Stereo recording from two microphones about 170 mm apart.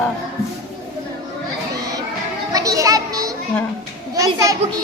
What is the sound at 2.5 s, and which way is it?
Children playing, 20° right (ahead or behind).